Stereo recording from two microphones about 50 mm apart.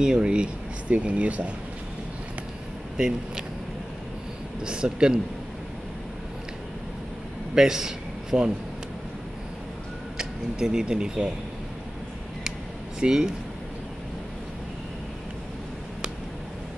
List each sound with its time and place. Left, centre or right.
0.0 s speech: centre
3.0 s a man's voice: centre
4.6 s a man's voice: centre
7.5 s a man's voice: centre
10.1 s speech: centre
13.0 s a man's voice: centre